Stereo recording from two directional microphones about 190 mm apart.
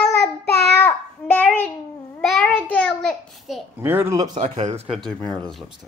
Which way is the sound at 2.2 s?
5° left (ahead or behind).